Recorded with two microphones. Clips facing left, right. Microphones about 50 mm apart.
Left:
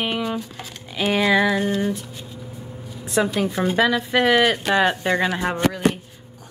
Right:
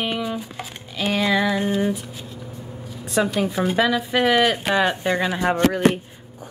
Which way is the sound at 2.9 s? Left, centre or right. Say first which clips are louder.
Even; centre.